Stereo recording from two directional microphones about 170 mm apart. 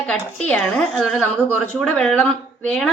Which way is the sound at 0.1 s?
10° left (ahead or behind).